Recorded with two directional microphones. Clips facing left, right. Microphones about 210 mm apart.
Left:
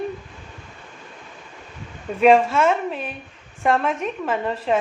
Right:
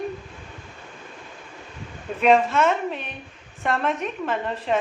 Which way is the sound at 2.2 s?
Centre (ahead or behind).